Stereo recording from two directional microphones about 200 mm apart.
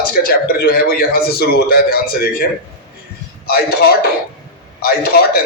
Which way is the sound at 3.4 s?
50° left (ahead or behind).